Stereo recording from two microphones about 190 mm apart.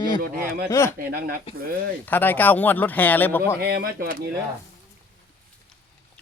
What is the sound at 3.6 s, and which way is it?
Speech, 55° right (ahead or behind).